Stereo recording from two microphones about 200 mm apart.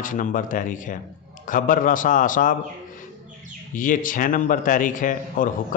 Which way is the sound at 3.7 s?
40° left (ahead or behind).